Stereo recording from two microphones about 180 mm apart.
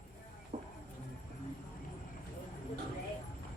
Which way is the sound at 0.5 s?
40° right (ahead or behind).